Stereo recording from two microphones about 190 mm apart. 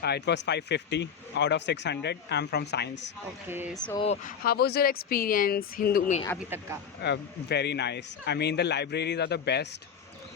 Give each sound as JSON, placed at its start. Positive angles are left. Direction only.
{"t": 0.0, "sound": "speech", "side_deg": 60}
{"t": 3.9, "sound": "speech", "side_deg": 35}
{"t": 6.5, "sound": "speech", "side_deg": -10}
{"t": 7.0, "sound": "speech", "side_deg": 60}